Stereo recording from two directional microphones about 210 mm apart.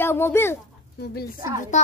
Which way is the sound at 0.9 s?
50° left (ahead or behind).